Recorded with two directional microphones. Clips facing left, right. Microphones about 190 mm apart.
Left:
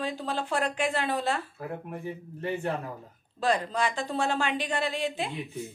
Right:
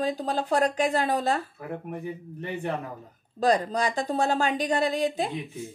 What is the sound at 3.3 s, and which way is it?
Speech, 40° right (ahead or behind).